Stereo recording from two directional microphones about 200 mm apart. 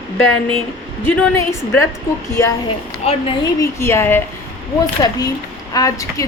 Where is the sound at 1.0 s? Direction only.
10° left (ahead or behind).